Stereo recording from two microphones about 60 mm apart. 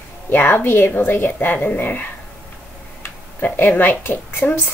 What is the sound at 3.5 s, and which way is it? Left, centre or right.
A woman's voice, left.